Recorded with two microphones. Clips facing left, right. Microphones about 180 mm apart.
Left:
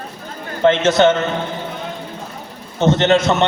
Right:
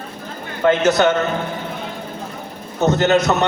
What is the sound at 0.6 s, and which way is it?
Speech, 25° left (ahead or behind).